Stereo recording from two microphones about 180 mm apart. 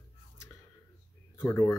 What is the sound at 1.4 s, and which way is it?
Speech, 15° left (ahead or behind).